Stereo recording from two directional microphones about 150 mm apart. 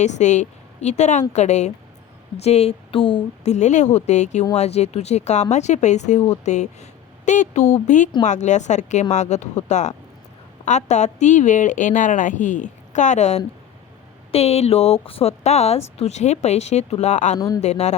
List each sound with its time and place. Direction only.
0.0 s a woman's voice: 50° left (ahead or behind)
17.3 s speech: 25° left (ahead or behind)
17.6 s speech: 50° left (ahead or behind)